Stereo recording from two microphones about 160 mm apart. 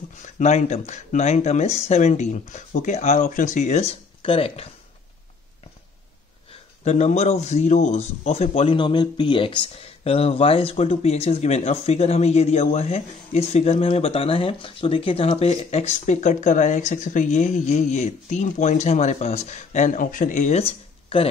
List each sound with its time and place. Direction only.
0.2 s speech: 45° left (ahead or behind)
6.8 s speech: 45° left (ahead or behind)